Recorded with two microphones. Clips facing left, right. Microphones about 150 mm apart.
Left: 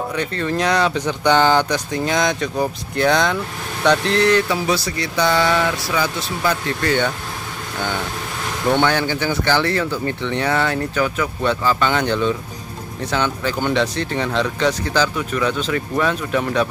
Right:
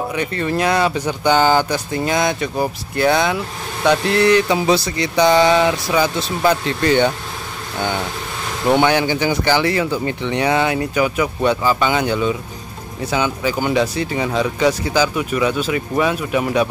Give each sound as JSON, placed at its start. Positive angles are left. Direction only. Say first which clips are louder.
{"t": 0.4, "sound": "speech", "louder": "right 1 dB", "side_deg": -5}
{"t": 4.6, "sound": "speech", "louder": "right 4 dB", "side_deg": -20}
{"t": 8.6, "sound": "speech", "louder": "right 3 dB", "side_deg": -10}